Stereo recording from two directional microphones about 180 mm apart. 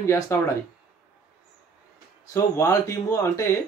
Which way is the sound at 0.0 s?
15° left (ahead or behind).